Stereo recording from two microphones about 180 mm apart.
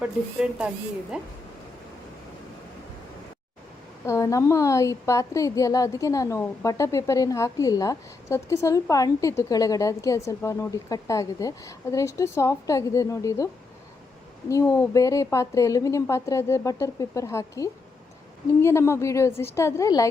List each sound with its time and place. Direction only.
0.0 s speech: 5° right (ahead or behind)
4.0 s a woman's voice: 15° left (ahead or behind)
14.5 s a woman's voice: 15° left (ahead or behind)